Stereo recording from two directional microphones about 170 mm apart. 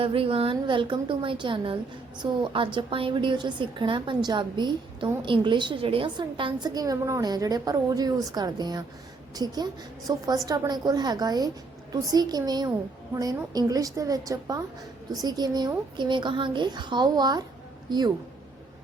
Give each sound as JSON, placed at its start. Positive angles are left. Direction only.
{"t": 0.0, "sound": "a woman's voice", "side_deg": -30}